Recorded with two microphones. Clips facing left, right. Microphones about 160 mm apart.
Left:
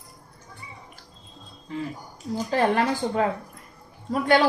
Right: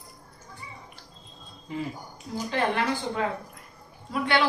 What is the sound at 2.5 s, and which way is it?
A woman's voice, 40° left (ahead or behind).